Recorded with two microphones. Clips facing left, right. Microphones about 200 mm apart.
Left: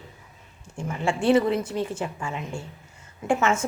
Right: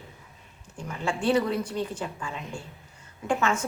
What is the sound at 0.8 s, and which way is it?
A woman's voice, 25° left (ahead or behind).